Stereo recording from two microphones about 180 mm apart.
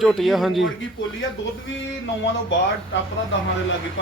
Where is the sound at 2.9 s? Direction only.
90° left.